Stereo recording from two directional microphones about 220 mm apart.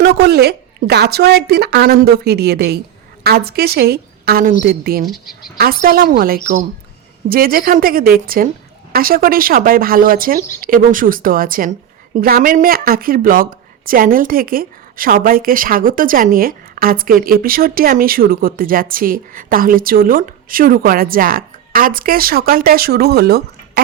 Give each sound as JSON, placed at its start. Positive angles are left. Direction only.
{"t": 0.0, "sound": "a woman's voice", "side_deg": -50}
{"t": 5.0, "sound": "speech", "side_deg": 0}
{"t": 5.5, "sound": "speech", "side_deg": -40}